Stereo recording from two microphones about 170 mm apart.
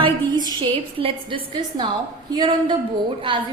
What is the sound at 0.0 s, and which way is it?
A woman's voice, 25° right (ahead or behind).